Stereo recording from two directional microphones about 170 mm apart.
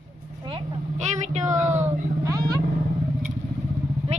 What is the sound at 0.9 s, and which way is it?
Speech, 45° right (ahead or behind).